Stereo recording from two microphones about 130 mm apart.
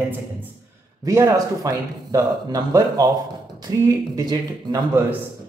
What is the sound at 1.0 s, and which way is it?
Speech, 25° right (ahead or behind).